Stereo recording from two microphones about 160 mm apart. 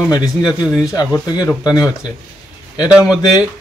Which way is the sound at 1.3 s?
25° left (ahead or behind).